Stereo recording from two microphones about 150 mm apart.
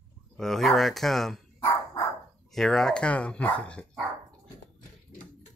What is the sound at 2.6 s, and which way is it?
Speech, centre (ahead or behind).